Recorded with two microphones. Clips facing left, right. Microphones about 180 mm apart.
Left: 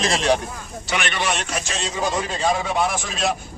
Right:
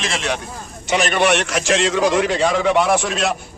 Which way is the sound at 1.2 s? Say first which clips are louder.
Right 8 dB; 75° right (ahead or behind).